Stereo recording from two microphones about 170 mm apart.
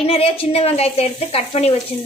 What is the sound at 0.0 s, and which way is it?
Speech, 35° left (ahead or behind).